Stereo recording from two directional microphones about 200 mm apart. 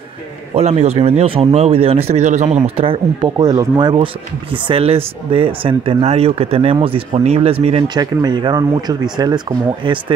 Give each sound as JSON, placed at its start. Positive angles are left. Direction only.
{"t": 0.6, "sound": "speech", "side_deg": -35}